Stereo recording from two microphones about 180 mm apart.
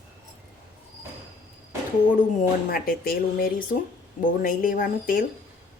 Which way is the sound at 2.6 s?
55° left (ahead or behind).